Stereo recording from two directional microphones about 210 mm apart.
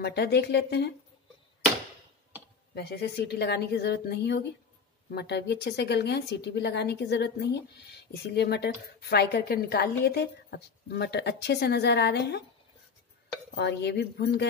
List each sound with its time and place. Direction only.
0.0 s a woman's voice: 50° left (ahead or behind)
2.7 s a woman's voice: 50° left (ahead or behind)
13.6 s a woman's voice: 55° left (ahead or behind)